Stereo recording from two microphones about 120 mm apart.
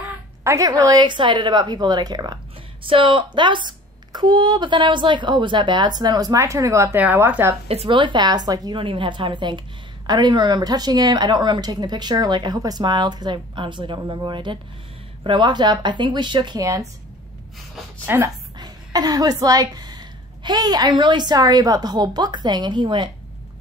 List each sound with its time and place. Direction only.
0.4 s speech: 25° right (ahead or behind)
2.8 s speech: 45° right (ahead or behind); by 7.0 s 25° right (ahead or behind)
7.0 s speech: 15° right (ahead or behind)
7.6 s speech: 55° right (ahead or behind); by 8.8 s 35° right (ahead or behind)
8.8 s speech: 45° right (ahead or behind); by 16.8 s 30° right (ahead or behind)
18.0 s a woman's voice: 15° right (ahead or behind)
18.6 s a woman's voice: 35° right (ahead or behind)